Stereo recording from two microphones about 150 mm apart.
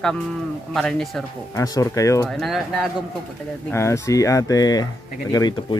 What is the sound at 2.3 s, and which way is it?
Speech, centre (ahead or behind).